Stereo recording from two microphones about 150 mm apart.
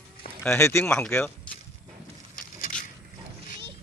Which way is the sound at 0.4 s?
15° left (ahead or behind).